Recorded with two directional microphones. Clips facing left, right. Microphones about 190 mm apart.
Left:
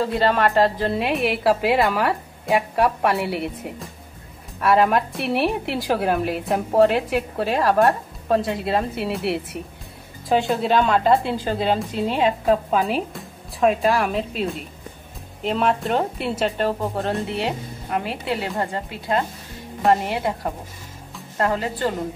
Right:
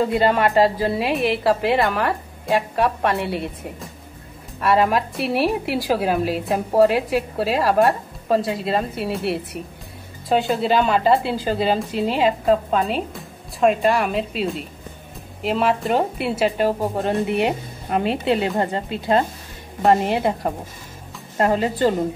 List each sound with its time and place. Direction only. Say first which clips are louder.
0.0 s a woman's voice: right 2 dB; 15° right (ahead or behind)
21.4 s speech: right 4 dB; 20° right (ahead or behind)